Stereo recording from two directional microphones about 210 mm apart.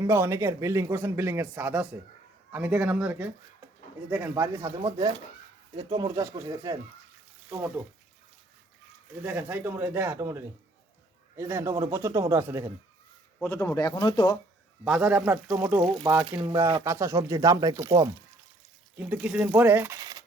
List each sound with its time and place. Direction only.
0.0 s speech: 10° right (ahead or behind)
4.8 s speech: 20° right (ahead or behind)
9.2 s speech: 5° right (ahead or behind)
13.4 s speech: 10° left (ahead or behind)
14.8 s speech: 5° right (ahead or behind)